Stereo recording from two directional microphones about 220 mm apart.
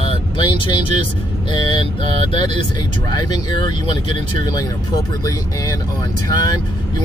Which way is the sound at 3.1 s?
20° left (ahead or behind).